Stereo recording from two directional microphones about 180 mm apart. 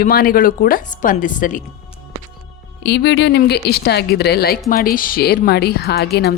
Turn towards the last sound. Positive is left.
turn(degrees=65)  # may be behind; listen again after turning